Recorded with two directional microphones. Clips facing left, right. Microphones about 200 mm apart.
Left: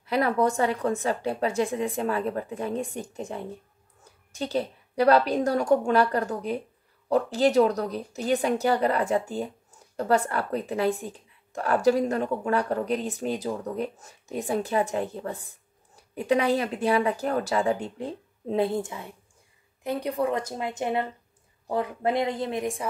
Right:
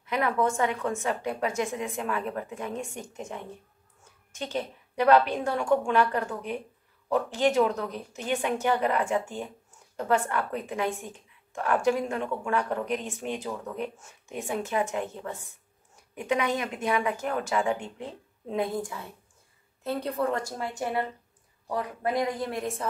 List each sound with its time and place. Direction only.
0.0 s a woman's voice: 35° left (ahead or behind); by 22.8 s 15° left (ahead or behind)